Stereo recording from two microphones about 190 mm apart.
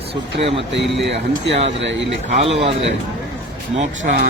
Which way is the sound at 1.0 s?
70° right (ahead or behind).